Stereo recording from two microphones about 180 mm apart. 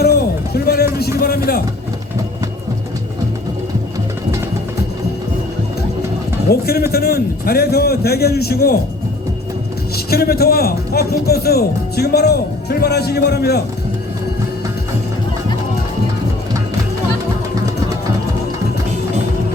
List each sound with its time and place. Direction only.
0.0 s a sound: 60° left (ahead or behind)
6.5 s a man's voice: 60° left (ahead or behind)
10.1 s a man's voice: 60° left (ahead or behind)